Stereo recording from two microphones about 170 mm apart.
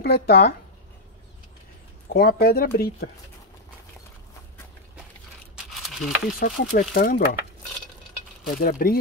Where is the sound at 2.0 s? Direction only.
60° left (ahead or behind).